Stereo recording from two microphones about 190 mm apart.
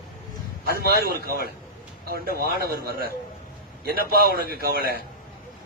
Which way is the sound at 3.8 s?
55° right (ahead or behind).